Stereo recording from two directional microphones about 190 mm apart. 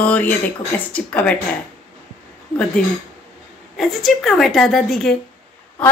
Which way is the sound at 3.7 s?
Centre (ahead or behind).